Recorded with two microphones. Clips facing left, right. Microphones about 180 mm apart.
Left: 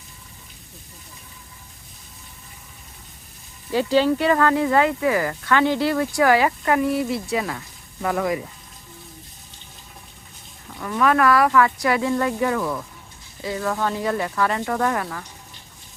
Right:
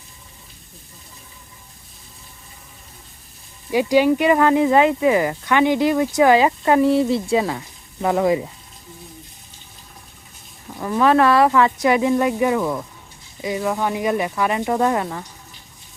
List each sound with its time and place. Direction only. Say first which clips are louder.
3.7 s speech: right 3 dB; 15° right (ahead or behind)
10.8 s speech: right 4 dB; 25° right (ahead or behind)